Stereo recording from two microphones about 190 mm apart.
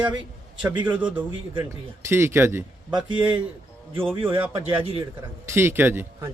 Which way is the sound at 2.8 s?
25° right (ahead or behind).